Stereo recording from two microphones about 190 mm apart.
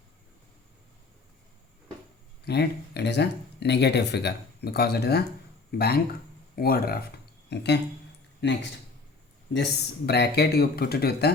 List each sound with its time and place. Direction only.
2.4 s speech: 60° left (ahead or behind)
9.5 s speech: 65° left (ahead or behind)